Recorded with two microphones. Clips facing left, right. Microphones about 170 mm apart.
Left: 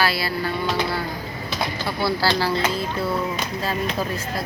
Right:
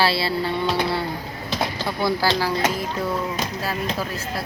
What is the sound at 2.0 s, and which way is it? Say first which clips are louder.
Speech: even; 15° right (ahead or behind).